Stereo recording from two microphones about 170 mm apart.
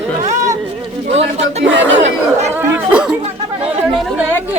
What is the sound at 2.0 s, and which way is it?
Chatter, 40° right (ahead or behind).